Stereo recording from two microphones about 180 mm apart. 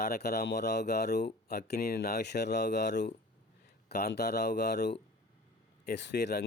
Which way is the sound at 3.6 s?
65° left (ahead or behind).